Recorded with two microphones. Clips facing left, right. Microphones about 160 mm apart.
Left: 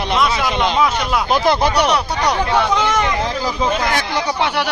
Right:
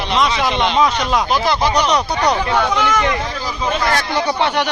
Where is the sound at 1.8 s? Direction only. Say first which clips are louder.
Even; 10° left (ahead or behind).